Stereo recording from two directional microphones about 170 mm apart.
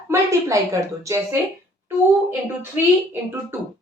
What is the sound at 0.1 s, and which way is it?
A woman's voice, 15° right (ahead or behind).